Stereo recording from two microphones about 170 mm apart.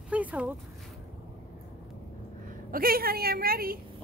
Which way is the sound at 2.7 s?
60° right (ahead or behind).